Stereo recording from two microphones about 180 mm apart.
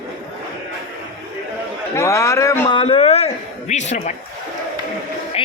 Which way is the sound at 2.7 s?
30° left (ahead or behind).